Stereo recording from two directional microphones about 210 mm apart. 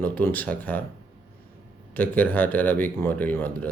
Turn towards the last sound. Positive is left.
turn(degrees=10)  # may be behind; listen again after turning